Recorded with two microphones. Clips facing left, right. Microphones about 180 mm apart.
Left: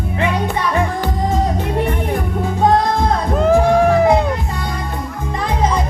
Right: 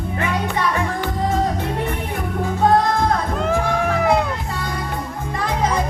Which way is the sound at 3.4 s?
35° left (ahead or behind).